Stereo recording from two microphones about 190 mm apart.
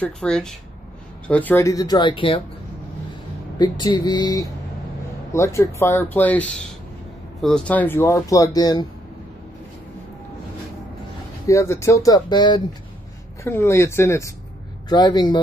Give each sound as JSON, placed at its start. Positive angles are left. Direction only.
{"t": 0.0, "sound": "speech", "side_deg": 5}
{"t": 3.5, "sound": "speech", "side_deg": 25}
{"t": 7.4, "sound": "speech", "side_deg": 5}
{"t": 11.4, "sound": "speech", "side_deg": 15}